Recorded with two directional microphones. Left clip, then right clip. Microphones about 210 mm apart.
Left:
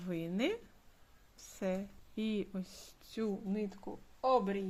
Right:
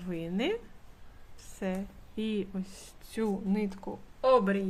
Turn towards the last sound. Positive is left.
turn(degrees=5)  # may be behind; listen again after turning